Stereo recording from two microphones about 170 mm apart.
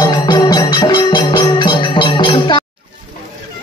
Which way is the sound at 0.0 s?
25° left (ahead or behind).